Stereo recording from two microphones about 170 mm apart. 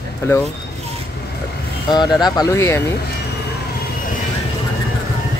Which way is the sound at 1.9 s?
25° left (ahead or behind).